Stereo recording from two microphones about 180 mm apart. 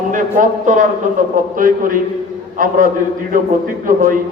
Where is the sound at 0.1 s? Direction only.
45° right (ahead or behind).